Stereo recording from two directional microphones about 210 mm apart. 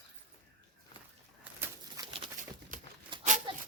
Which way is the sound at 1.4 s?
10° right (ahead or behind).